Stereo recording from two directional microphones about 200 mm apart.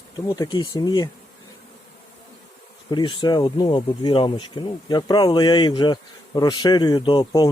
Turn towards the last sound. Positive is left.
turn(degrees=20)  # may be behind; listen again after turning